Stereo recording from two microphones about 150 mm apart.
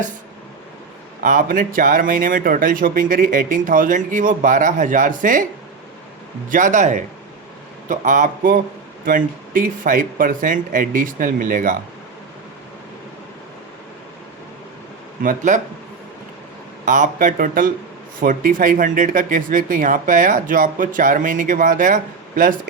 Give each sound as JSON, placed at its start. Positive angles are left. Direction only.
{"t": 1.2, "sound": "speech", "side_deg": -65}
{"t": 6.5, "sound": "speech", "side_deg": -60}
{"t": 15.2, "sound": "speech", "side_deg": -60}
{"t": 16.8, "sound": "speech", "side_deg": -60}